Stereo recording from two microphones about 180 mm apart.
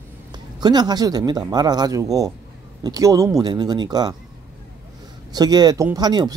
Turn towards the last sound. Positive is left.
turn(degrees=-20)  # may be behind; listen again after turning